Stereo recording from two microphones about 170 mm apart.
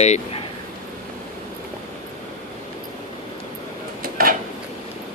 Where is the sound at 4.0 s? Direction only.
60° right (ahead or behind).